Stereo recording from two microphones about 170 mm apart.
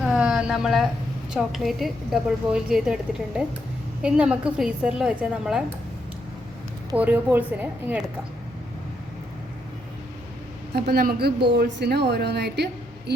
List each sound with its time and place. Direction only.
0.0 s a sound: 5° right (ahead or behind)
1.3 s a woman's voice: centre (ahead or behind)
6.9 s speech: 10° right (ahead or behind)
10.8 s a woman's voice: 65° right (ahead or behind)